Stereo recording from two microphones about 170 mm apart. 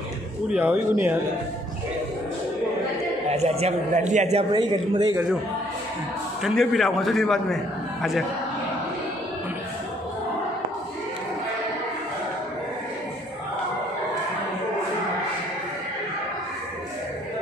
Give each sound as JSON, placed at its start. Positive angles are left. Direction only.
{"t": 0.5, "sound": "speech", "side_deg": -5}
{"t": 3.3, "sound": "a man's voice", "side_deg": -40}
{"t": 4.5, "sound": "a man's voice", "side_deg": -25}
{"t": 6.4, "sound": "a man's voice", "side_deg": 0}